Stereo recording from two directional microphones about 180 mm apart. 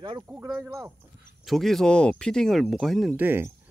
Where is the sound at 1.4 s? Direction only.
Centre (ahead or behind).